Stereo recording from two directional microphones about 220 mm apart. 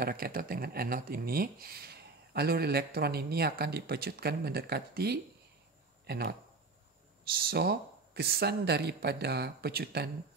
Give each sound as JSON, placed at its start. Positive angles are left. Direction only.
{"t": 0.0, "sound": "speech", "side_deg": -45}
{"t": 7.3, "sound": "speech", "side_deg": -45}